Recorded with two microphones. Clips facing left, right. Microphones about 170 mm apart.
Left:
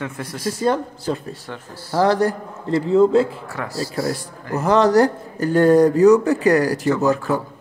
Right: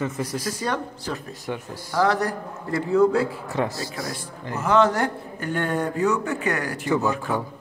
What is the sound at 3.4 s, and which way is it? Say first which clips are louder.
Speech: right 1 dB; 20° right (ahead or behind).